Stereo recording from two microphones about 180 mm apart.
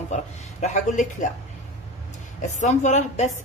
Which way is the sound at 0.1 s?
40° left (ahead or behind).